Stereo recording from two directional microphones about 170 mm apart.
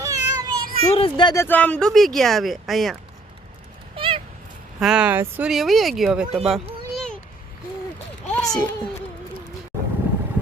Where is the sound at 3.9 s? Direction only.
30° right (ahead or behind).